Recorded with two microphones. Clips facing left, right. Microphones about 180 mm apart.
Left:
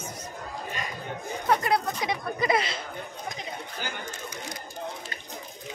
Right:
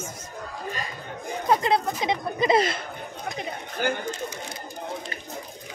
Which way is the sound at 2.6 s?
50° right (ahead or behind).